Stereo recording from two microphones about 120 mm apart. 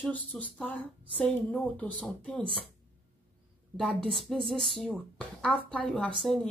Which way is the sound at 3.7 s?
5° left (ahead or behind).